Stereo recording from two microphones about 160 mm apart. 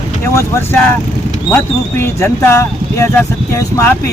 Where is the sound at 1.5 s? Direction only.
15° left (ahead or behind).